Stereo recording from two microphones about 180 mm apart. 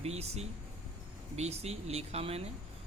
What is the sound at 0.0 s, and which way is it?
Speech, 35° right (ahead or behind).